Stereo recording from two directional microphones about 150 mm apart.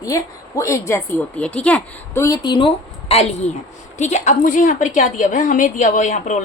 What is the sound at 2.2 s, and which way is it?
A woman's voice, 25° left (ahead or behind).